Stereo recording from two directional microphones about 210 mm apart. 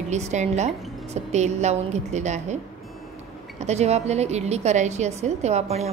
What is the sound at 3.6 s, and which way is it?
A woman's voice, 30° right (ahead or behind).